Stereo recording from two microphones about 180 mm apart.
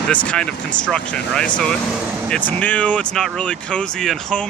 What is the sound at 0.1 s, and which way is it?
Speech, 5° left (ahead or behind).